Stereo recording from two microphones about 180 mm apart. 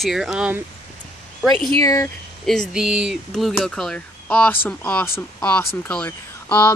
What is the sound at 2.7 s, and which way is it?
Speech, 5° right (ahead or behind).